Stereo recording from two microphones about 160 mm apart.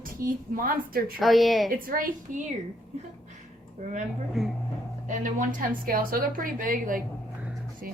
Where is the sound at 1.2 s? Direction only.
Centre (ahead or behind).